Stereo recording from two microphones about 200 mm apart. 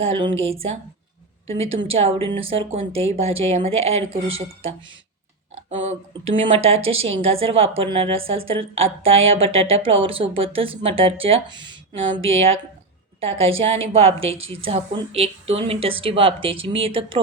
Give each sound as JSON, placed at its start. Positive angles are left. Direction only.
{"t": 0.0, "sound": "a woman's voice", "side_deg": -25}
{"t": 1.5, "sound": "a woman's voice", "side_deg": -30}
{"t": 5.9, "sound": "a woman's voice", "side_deg": -30}